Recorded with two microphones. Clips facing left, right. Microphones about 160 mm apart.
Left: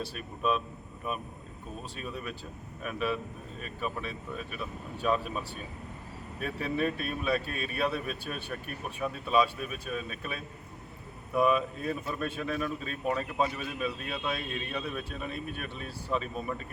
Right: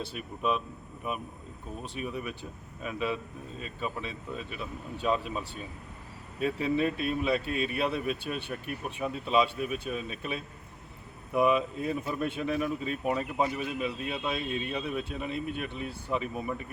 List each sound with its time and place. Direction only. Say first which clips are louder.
0.0 s speech: even; 20° right (ahead or behind)